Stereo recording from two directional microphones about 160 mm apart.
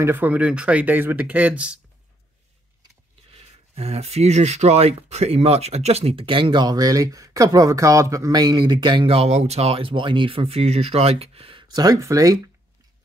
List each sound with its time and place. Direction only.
0.0 s speech: 15° right (ahead or behind)
3.3 s speech: 40° right (ahead or behind); by 12.4 s 20° right (ahead or behind)